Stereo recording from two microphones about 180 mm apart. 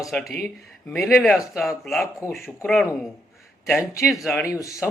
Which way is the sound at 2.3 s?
Centre (ahead or behind).